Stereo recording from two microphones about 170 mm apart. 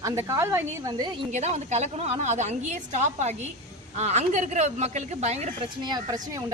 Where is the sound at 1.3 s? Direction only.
40° right (ahead or behind).